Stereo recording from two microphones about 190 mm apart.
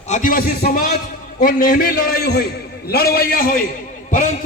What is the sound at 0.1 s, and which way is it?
A man's voice, 45° left (ahead or behind).